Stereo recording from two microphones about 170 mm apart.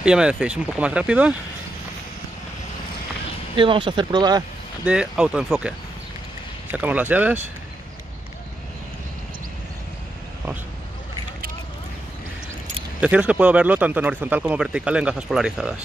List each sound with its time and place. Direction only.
0.0 s speech: 5° right (ahead or behind)
3.5 s speech: 30° right (ahead or behind)
4.8 s speech: 5° right (ahead or behind)
6.7 s speech: 10° right (ahead or behind)
13.0 s speech: 5° right (ahead or behind)